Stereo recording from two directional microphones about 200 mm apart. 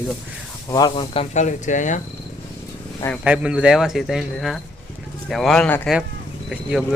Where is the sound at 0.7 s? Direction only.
25° left (ahead or behind); by 2.0 s 40° left (ahead or behind).